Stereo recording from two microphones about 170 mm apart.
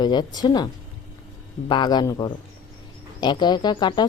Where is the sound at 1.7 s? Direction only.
25° left (ahead or behind).